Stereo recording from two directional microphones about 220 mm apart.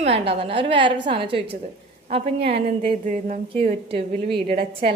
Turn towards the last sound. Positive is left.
turn(degrees=-40)  # may be behind; listen again after turning